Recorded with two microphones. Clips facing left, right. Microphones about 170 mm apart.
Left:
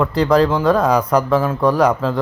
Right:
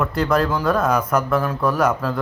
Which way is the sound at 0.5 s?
30° left (ahead or behind).